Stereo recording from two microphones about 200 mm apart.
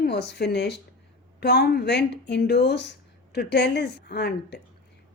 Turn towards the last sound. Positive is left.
turn(degrees=55)  # may be behind; listen again after turning